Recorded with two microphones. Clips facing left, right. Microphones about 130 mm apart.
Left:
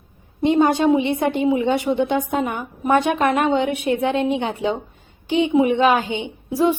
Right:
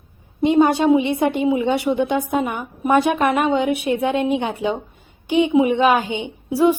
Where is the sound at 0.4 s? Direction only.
15° right (ahead or behind).